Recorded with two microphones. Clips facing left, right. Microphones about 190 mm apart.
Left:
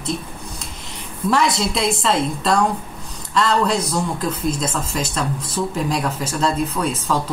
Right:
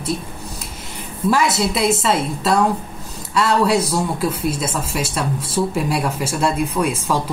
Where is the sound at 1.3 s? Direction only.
5° right (ahead or behind).